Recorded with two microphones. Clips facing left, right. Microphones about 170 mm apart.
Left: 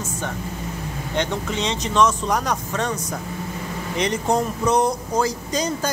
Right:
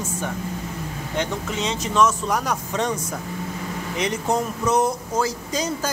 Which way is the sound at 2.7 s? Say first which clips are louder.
Right 4 dB; 15° right (ahead or behind).